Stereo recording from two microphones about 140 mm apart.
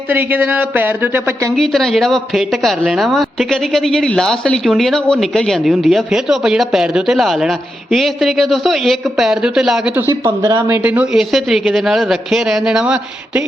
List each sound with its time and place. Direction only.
0.1 s speech: 15° right (ahead or behind)
1.5 s speech: 5° left (ahead or behind)
10.1 s speech: 20° right (ahead or behind)
10.8 s speech: 10° right (ahead or behind)